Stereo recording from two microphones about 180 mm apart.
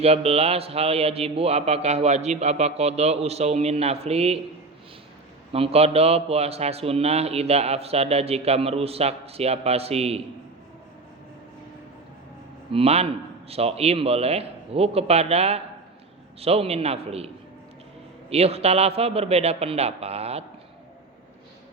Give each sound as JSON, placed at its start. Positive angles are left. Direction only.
{"t": 0.0, "sound": "a man's voice", "side_deg": -35}
{"t": 5.5, "sound": "a man's voice", "side_deg": -30}
{"t": 12.7, "sound": "a man's voice", "side_deg": -35}